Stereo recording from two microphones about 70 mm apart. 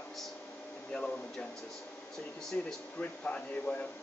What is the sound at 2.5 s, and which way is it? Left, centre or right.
Speech, left.